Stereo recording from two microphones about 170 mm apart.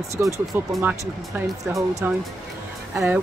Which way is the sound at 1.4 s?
Centre (ahead or behind).